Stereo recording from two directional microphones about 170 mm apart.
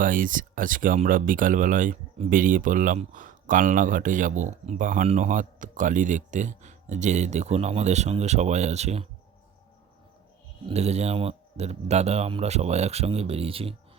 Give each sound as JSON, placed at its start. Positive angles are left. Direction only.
{"t": 0.0, "sound": "speech", "side_deg": -50}
{"t": 10.7, "sound": "a man's voice", "side_deg": -40}